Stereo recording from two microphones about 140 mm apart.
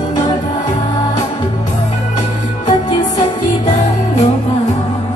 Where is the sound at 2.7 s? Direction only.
30° left (ahead or behind).